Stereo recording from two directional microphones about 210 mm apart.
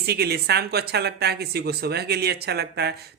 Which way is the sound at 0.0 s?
50° right (ahead or behind).